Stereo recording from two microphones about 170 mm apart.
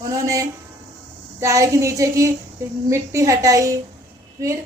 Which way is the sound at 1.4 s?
20° right (ahead or behind).